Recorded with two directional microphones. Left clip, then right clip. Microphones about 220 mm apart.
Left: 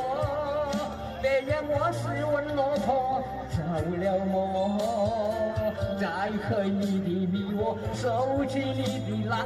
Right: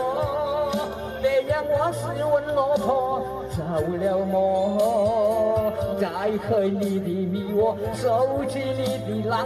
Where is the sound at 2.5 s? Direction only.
10° right (ahead or behind).